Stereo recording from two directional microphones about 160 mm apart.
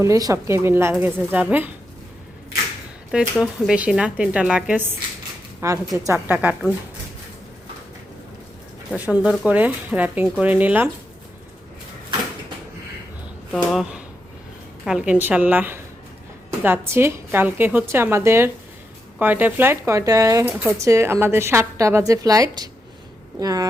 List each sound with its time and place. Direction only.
0.0 s speech: 20° right (ahead or behind)
3.1 s speech: 5° right (ahead or behind)
5.5 s a woman's voice: 20° right (ahead or behind)
8.9 s speech: 5° right (ahead or behind)
13.5 s a woman's voice: centre (ahead or behind); by 23.6 s 20° right (ahead or behind)